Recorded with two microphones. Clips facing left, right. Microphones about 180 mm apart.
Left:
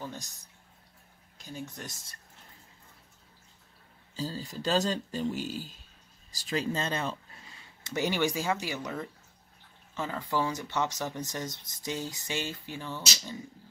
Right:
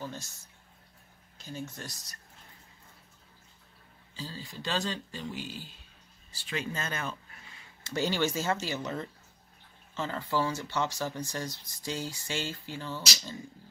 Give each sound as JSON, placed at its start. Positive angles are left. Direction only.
{"t": 0.0, "sound": "speech", "side_deg": 15}
{"t": 1.4, "sound": "speech", "side_deg": 15}
{"t": 4.2, "sound": "speech", "side_deg": 40}
{"t": 7.8, "sound": "speech", "side_deg": 15}